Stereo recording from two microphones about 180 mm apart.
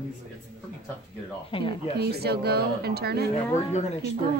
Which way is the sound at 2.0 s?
65° right (ahead or behind).